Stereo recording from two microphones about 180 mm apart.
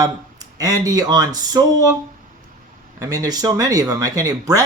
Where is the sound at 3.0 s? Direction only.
20° right (ahead or behind).